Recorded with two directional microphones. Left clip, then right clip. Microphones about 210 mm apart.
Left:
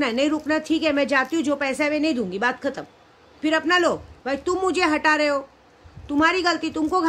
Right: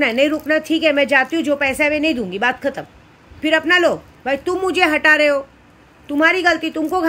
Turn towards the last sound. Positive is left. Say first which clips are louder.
# right 3 dB
turn(degrees=15)  # may be behind; listen again after turning